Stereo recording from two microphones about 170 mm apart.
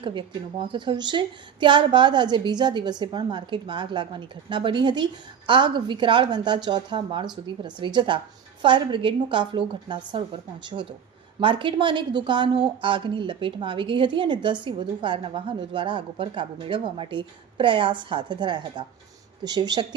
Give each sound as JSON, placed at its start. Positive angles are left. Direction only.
{"t": 0.0, "sound": "a woman's voice", "side_deg": -30}